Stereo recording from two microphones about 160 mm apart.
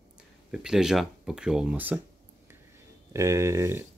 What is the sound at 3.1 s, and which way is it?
Speech, 20° right (ahead or behind).